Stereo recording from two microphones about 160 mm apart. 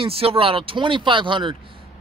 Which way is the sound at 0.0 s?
35° right (ahead or behind).